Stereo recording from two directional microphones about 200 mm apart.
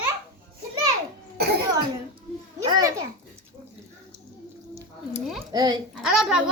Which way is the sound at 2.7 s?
20° right (ahead or behind).